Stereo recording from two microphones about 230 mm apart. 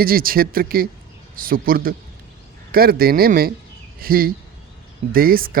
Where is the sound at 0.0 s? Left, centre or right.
Right.